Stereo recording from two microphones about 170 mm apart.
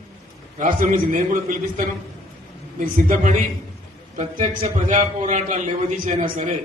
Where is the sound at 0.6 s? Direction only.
50° right (ahead or behind).